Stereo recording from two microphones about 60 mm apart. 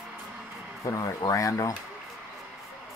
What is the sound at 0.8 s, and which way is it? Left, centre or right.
Speech, left.